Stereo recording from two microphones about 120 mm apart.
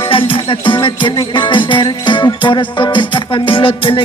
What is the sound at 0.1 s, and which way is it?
Music, 45° left (ahead or behind).